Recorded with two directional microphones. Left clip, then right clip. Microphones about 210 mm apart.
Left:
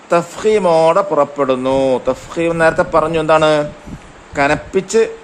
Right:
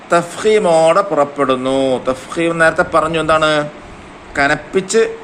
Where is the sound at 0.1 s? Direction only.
35° left (ahead or behind).